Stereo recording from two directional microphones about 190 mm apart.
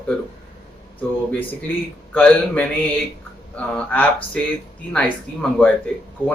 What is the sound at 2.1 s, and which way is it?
Speech, 10° left (ahead or behind).